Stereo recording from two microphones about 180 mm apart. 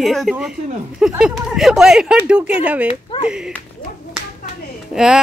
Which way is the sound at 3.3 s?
5° right (ahead or behind).